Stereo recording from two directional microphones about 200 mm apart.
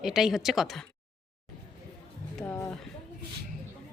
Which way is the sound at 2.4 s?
15° left (ahead or behind).